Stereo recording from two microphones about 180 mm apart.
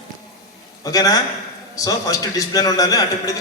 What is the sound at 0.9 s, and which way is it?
A man's voice, 20° left (ahead or behind).